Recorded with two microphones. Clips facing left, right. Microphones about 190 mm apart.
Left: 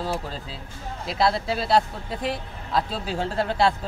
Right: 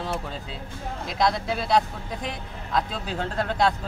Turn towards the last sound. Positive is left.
turn(degrees=5)  # may be behind; listen again after turning